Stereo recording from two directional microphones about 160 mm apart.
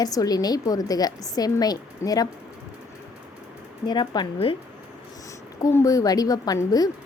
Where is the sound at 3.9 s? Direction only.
30° left (ahead or behind).